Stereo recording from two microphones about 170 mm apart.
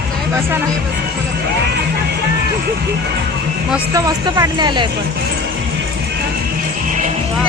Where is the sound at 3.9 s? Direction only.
20° right (ahead or behind).